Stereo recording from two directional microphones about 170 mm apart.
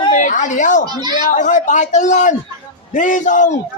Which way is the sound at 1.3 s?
50° left (ahead or behind).